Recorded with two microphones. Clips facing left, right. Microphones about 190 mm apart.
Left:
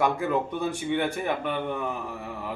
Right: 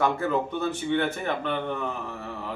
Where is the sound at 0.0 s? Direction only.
10° left (ahead or behind).